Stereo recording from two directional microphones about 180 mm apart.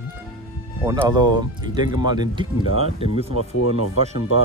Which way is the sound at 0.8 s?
20° right (ahead or behind).